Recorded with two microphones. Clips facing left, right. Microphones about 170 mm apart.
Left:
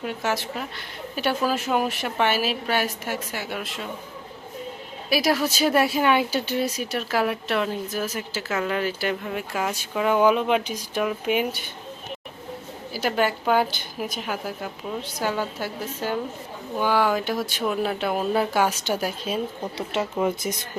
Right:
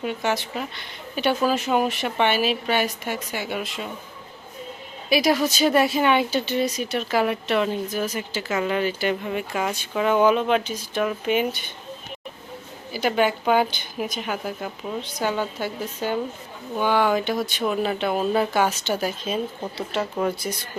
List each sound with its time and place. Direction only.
0.0 s speech: centre (ahead or behind)
5.0 s speech: 5° left (ahead or behind)
12.9 s speech: 5° left (ahead or behind)